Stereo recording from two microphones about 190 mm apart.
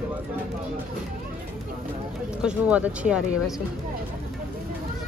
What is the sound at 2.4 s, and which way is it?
Speech, 5° right (ahead or behind).